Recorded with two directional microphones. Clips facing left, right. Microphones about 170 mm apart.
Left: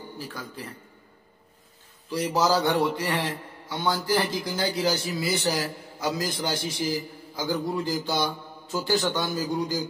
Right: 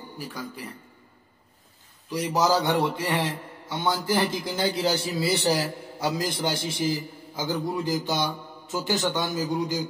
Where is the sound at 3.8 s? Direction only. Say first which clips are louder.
Even; 25° right (ahead or behind).